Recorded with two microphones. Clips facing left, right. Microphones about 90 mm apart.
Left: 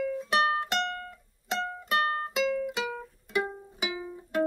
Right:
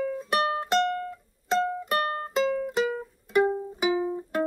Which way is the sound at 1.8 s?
40° right (ahead or behind).